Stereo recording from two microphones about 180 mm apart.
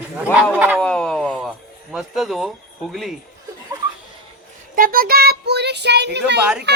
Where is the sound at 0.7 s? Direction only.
5° left (ahead or behind).